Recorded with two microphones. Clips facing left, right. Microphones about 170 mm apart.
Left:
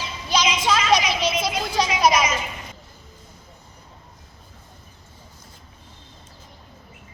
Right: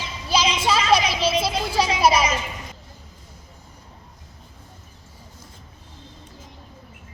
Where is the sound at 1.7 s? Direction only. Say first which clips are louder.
Right 1 dB; 5° right (ahead or behind).